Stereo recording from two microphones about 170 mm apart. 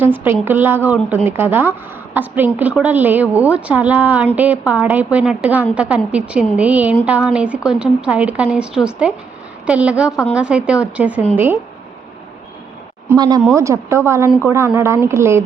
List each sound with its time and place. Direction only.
0.0 s speech: 10° right (ahead or behind)
13.1 s speech: 25° right (ahead or behind)